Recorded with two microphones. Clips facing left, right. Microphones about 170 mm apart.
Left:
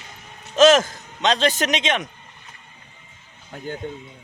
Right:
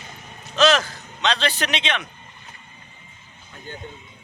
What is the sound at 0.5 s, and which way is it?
A man's voice, 45° left (ahead or behind).